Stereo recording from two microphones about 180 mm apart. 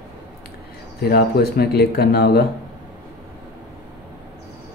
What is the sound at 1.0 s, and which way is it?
Speech, 60° left (ahead or behind).